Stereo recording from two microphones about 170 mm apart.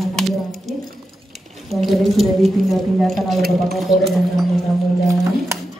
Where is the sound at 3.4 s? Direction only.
65° right (ahead or behind).